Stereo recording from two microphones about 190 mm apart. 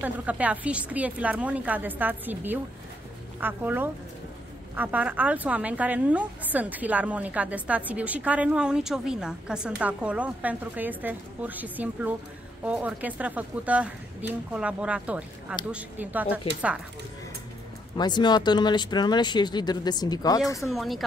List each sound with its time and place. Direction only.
0.0 s a woman's voice: 10° right (ahead or behind)
17.9 s speech: 25° left (ahead or behind)
20.6 s speech: centre (ahead or behind)